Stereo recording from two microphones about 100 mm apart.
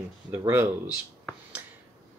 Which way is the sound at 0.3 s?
25° right (ahead or behind).